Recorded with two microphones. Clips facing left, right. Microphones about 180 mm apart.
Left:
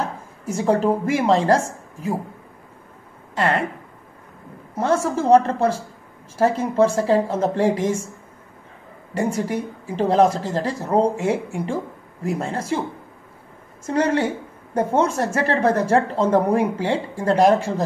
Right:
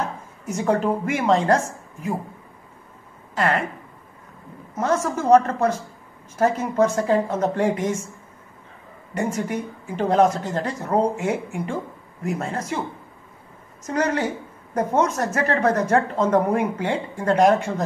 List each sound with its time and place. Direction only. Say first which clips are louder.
0.0 s speech: left 1 dB; 30° left (ahead or behind)
3.3 s speech: left 1 dB; 30° left (ahead or behind)
4.7 s a woman's voice: left 2 dB; 30° left (ahead or behind)
9.1 s speech: left 2 dB; 35° left (ahead or behind)
13.8 s a woman's voice: left 3 dB; 30° left (ahead or behind)